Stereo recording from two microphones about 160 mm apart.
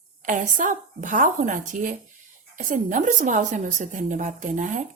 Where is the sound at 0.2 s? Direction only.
50° right (ahead or behind).